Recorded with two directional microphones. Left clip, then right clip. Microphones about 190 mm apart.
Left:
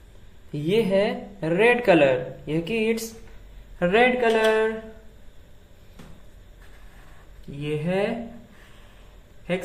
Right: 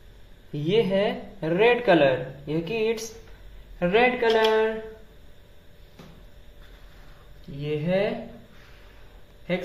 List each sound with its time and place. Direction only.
0.5 s a man's voice: 10° left (ahead or behind)
7.6 s speech: 25° left (ahead or behind)